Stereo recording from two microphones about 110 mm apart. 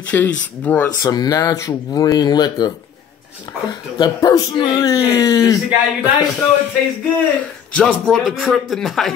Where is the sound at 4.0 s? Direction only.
35° left (ahead or behind).